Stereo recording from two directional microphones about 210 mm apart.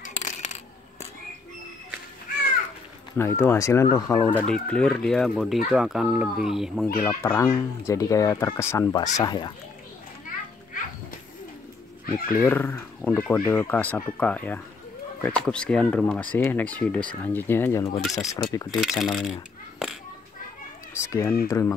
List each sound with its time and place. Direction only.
0.0 s coin: 35° left (ahead or behind)
3.2 s fowl: 10° left (ahead or behind)
5.7 s speech: centre (ahead or behind)
7.1 s fowl: 10° left (ahead or behind)
9.1 s speech: 20° left (ahead or behind)
12.3 s fowl: 10° left (ahead or behind)
15.2 s speech: 5° left (ahead or behind)
17.2 s fowl: 10° left (ahead or behind)
18.7 s speech: centre (ahead or behind)
21.0 s fowl: 15° left (ahead or behind)